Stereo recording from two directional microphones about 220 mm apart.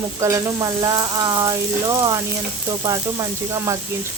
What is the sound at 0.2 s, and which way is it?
Frying, 15° right (ahead or behind).